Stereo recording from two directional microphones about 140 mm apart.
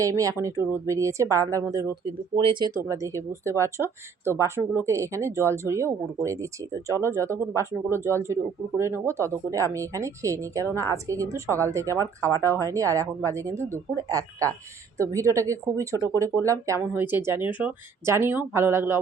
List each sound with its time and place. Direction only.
0.0 s speech: 25° right (ahead or behind)
2.0 s speech: 35° right (ahead or behind); by 18.9 s 15° right (ahead or behind)